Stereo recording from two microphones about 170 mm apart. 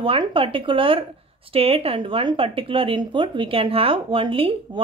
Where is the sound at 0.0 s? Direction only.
30° right (ahead or behind).